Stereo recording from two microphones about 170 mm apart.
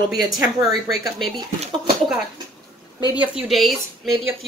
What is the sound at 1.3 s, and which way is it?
Speech, 25° right (ahead or behind).